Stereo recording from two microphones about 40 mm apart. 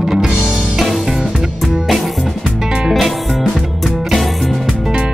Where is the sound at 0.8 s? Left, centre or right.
Centre.